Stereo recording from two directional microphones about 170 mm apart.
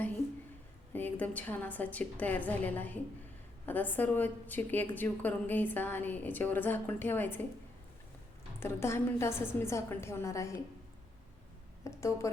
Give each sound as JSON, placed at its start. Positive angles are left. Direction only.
{"t": 0.9, "sound": "a woman's voice", "side_deg": 10}
{"t": 8.5, "sound": "a woman's voice", "side_deg": 15}
{"t": 11.9, "sound": "a woman's voice", "side_deg": 15}